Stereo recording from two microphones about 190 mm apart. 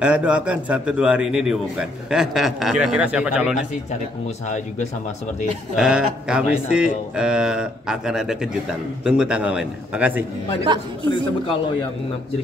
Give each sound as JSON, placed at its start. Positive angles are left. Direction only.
{"t": 0.0, "sound": "a man's voice", "side_deg": -5}
{"t": 5.8, "sound": "a man's voice", "side_deg": -5}
{"t": 10.7, "sound": "speech", "side_deg": -25}